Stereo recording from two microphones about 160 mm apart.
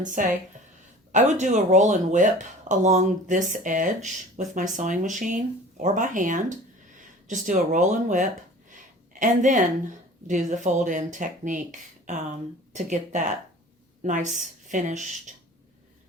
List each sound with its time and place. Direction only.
0.0 s a woman's voice: 55° right (ahead or behind)
8.7 s a sound: 50° right (ahead or behind)
10.2 s a woman's voice: 50° right (ahead or behind)